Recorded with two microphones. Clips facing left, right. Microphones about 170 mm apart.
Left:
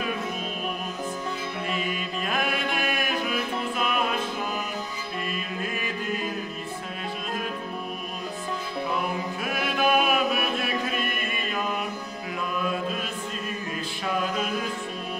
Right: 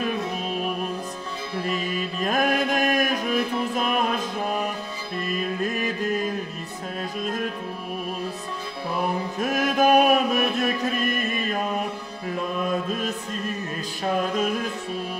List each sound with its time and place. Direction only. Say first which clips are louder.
1.6 s music: right 5 dB; 40° right (ahead or behind)
5.2 s music: right 7 dB; 40° right (ahead or behind)
9.4 s music: right 6 dB; 40° right (ahead or behind)
12.3 s mantra: right 3 dB; 40° right (ahead or behind)